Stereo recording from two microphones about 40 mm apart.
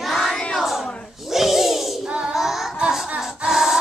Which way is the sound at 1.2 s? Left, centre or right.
Centre.